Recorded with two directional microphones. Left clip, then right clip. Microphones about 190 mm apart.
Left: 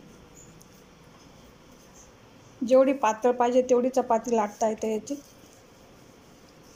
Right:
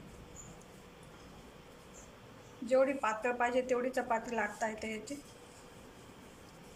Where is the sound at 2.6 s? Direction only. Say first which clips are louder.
Left 9 dB; 35° left (ahead or behind).